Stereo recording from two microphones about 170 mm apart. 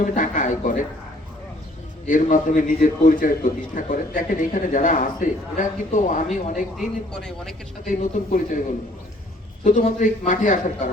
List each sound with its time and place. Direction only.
0.0 s a man's voice: 50° left (ahead or behind)
2.0 s a man's voice: 50° left (ahead or behind)
6.7 s speech: 5° left (ahead or behind)
7.9 s a man's voice: 50° left (ahead or behind)
9.6 s a man's voice: 50° left (ahead or behind)